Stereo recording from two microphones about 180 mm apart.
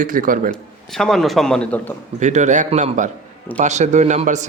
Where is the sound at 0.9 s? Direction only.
Centre (ahead or behind).